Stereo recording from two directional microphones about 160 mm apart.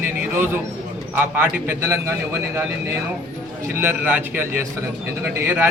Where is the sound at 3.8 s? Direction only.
10° right (ahead or behind).